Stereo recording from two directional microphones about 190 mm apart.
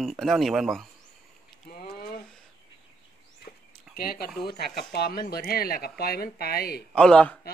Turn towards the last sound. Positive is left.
turn(degrees=5)  # may be behind; listen again after turning